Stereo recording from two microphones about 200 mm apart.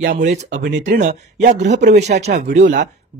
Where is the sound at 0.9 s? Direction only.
40° right (ahead or behind).